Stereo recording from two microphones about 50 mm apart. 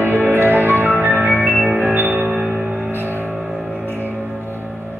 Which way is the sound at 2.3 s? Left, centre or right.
Centre.